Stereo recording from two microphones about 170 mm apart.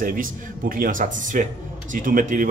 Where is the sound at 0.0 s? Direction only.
55° right (ahead or behind).